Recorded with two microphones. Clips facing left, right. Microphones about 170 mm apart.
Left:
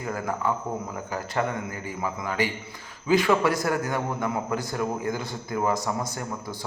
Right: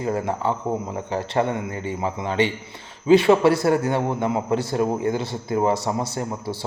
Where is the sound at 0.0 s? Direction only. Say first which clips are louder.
Right 5 dB; 25° right (ahead or behind).